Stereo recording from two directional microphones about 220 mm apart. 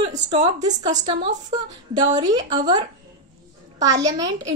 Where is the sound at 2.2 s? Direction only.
15° right (ahead or behind).